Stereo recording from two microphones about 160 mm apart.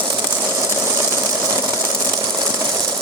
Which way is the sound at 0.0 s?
25° right (ahead or behind).